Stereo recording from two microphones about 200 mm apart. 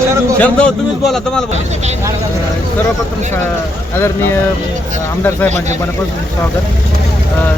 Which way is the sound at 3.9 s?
10° left (ahead or behind).